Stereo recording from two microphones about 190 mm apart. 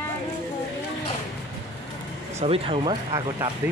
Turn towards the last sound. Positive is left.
turn(degrees=-20)  # may be behind; listen again after turning